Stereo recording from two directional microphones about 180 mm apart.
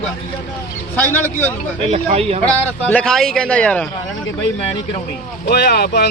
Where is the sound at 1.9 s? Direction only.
35° right (ahead or behind).